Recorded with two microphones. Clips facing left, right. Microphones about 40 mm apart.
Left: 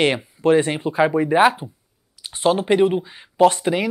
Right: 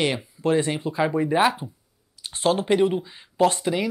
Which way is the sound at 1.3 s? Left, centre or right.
Centre.